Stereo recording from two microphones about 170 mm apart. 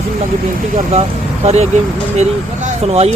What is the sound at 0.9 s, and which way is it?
Speech, 40° right (ahead or behind).